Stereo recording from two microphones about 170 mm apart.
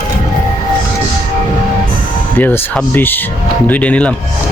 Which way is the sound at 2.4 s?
10° left (ahead or behind).